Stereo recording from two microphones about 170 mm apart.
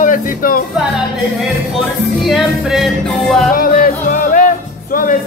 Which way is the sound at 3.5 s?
55° left (ahead or behind).